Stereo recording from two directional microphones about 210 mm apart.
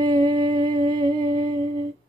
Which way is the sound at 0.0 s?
20° right (ahead or behind).